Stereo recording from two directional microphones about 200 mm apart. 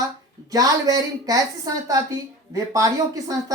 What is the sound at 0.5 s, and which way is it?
A woman's voice, 20° right (ahead or behind).